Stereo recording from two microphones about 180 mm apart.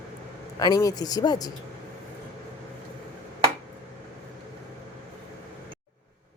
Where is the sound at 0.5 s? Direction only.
20° left (ahead or behind).